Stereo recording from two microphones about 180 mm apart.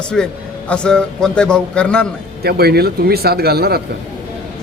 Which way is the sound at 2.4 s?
60° right (ahead or behind).